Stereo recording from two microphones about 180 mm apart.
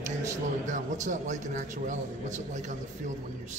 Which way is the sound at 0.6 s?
45° right (ahead or behind).